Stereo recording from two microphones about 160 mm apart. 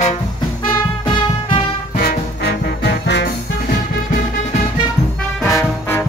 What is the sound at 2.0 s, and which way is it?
Music, 90° left.